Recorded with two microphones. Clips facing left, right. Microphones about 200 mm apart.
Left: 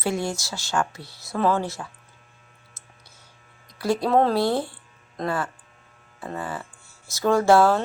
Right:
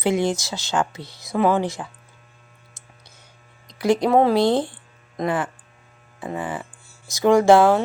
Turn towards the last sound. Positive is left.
turn(degrees=-15)  # may be behind; listen again after turning